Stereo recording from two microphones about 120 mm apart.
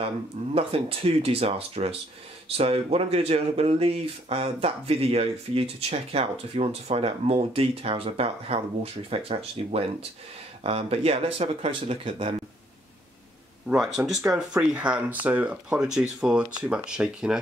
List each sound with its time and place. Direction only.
0.6 s speech: 50° right (ahead or behind)
13.9 s speech: 5° right (ahead or behind)